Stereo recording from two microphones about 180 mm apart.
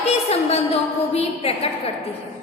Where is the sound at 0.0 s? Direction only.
35° left (ahead or behind).